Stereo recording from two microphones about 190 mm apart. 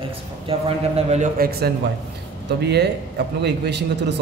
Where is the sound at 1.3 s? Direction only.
55° right (ahead or behind).